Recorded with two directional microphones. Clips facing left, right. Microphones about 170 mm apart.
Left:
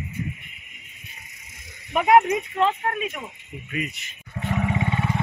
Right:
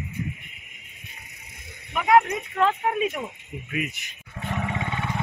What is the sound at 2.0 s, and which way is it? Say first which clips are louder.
Speech: left 2 dB; 25° left (ahead or behind).